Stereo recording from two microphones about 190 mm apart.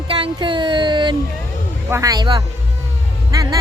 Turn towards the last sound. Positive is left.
turn(degrees=-20)  # may be behind; listen again after turning